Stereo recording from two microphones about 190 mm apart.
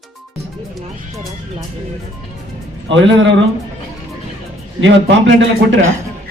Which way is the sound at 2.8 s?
75° right (ahead or behind).